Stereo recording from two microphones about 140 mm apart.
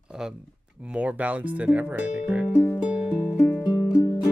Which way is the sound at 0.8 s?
10° right (ahead or behind).